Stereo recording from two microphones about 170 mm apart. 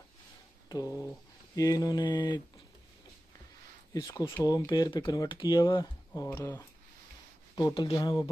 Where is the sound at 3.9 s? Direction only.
20° left (ahead or behind).